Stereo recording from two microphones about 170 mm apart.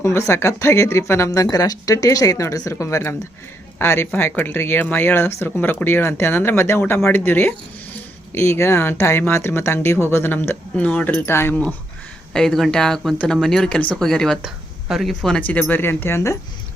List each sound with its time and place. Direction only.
0.0 s speech: 15° left (ahead or behind)